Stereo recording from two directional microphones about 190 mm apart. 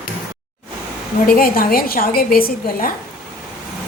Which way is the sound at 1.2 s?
50° left (ahead or behind).